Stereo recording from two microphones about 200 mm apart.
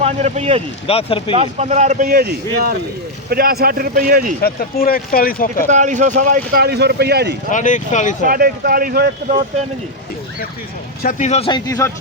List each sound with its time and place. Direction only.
0.0 s speech: 30° right (ahead or behind)
0.9 s speech: 30° left (ahead or behind)
1.4 s speech: 35° right (ahead or behind)
2.0 s speech: 50° right (ahead or behind)
4.4 s speech: 50° left (ahead or behind)
5.6 s speech: 40° right (ahead or behind); by 7.3 s 55° right (ahead or behind)
7.5 s speech: 40° left (ahead or behind)
8.2 s speech: 45° right (ahead or behind)
11.0 s speech: 35° left (ahead or behind); by 11.9 s 20° left (ahead or behind)